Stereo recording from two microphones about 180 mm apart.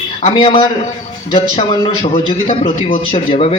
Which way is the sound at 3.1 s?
35° left (ahead or behind).